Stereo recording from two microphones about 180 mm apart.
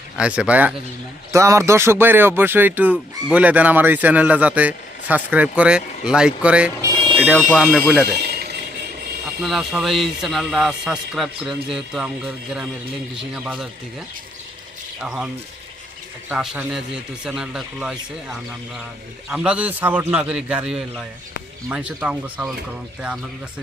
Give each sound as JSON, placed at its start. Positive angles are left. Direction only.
{"t": 0.2, "sound": "speech", "side_deg": -5}
{"t": 8.2, "sound": "a sound", "side_deg": -60}
{"t": 9.4, "sound": "speech", "side_deg": 0}
{"t": 15.0, "sound": "speech", "side_deg": -5}
{"t": 16.3, "sound": "speech", "side_deg": -5}